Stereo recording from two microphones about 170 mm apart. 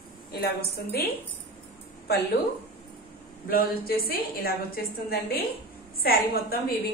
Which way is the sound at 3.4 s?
60° left (ahead or behind).